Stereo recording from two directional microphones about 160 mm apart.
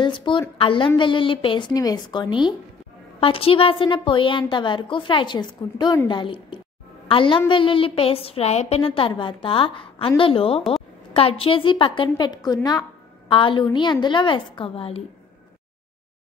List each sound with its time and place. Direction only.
0.0 s a woman's voice: 30° left (ahead or behind)